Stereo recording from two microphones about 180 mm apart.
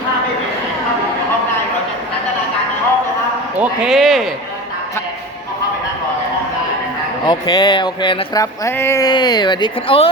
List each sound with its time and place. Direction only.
3.6 s speech: centre (ahead or behind)
7.3 s speech: 25° left (ahead or behind)